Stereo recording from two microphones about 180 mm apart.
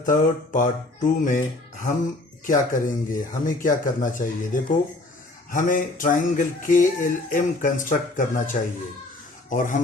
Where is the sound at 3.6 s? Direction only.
45° left (ahead or behind).